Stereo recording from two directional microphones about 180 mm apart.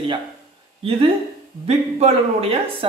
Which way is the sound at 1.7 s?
35° right (ahead or behind).